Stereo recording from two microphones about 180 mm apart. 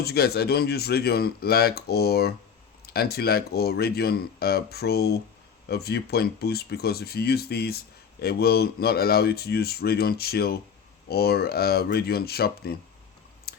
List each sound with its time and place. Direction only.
0.0 s speech: 60° left (ahead or behind)
13.5 s chewing: 60° left (ahead or behind)